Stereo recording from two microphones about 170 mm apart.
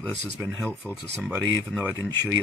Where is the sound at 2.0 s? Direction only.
20° right (ahead or behind).